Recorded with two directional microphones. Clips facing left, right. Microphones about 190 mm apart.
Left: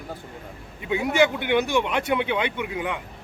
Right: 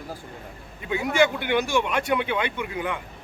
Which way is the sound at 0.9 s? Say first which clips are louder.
Left 1 dB; 20° left (ahead or behind).